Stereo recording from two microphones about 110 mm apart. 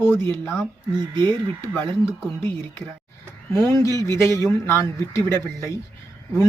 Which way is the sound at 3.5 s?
30° left (ahead or behind).